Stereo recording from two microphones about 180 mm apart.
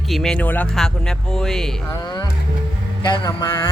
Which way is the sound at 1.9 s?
20° left (ahead or behind).